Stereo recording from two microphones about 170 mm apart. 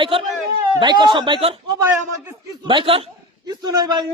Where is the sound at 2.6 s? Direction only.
30° right (ahead or behind).